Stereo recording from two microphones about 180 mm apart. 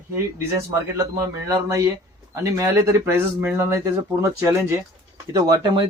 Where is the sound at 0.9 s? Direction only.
20° right (ahead or behind).